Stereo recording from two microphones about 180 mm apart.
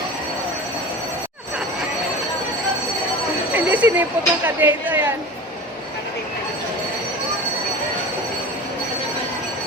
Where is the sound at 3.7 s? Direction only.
10° right (ahead or behind).